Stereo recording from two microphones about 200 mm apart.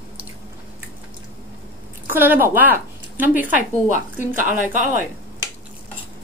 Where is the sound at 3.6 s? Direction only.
40° right (ahead or behind).